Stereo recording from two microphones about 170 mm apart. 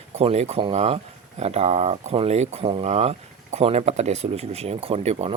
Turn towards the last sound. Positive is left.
turn(degrees=-35)  # may be behind; listen again after turning